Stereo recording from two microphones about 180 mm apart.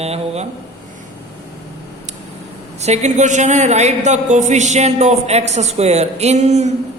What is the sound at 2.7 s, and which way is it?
A man's voice, 40° right (ahead or behind).